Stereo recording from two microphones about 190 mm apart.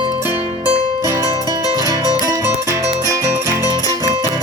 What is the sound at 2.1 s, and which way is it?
Music, 20° right (ahead or behind).